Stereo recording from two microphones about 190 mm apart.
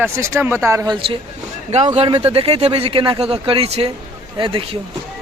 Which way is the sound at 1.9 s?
30° right (ahead or behind).